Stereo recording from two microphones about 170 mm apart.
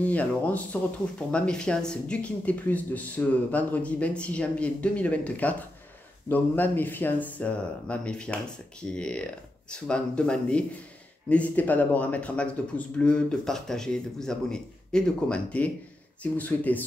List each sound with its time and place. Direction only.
0.0 s a man's voice: 10° left (ahead or behind)